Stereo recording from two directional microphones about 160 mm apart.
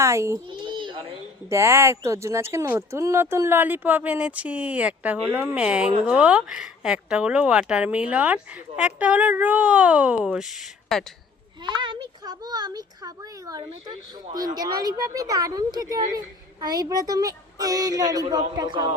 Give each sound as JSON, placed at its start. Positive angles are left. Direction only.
{"t": 0.0, "sound": "speech", "side_deg": -20}
{"t": 0.4, "sound": "a sound", "side_deg": -30}
{"t": 1.5, "sound": "speech", "side_deg": -15}
{"t": 11.6, "sound": "speech", "side_deg": -30}